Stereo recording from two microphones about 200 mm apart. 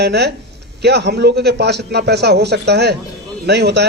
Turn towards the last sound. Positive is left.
turn(degrees=-55)  # may be behind; listen again after turning